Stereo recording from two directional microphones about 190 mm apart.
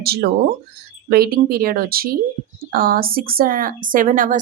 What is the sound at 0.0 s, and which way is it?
A woman's voice, 55° right (ahead or behind).